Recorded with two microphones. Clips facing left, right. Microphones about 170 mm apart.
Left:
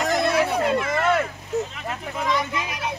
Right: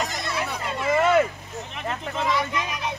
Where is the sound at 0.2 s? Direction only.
60° left (ahead or behind).